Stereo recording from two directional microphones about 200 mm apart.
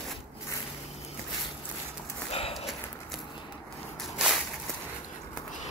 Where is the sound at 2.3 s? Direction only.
30° left (ahead or behind).